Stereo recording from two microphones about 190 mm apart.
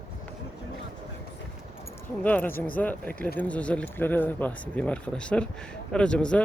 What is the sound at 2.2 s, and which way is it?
Speech, 10° left (ahead or behind).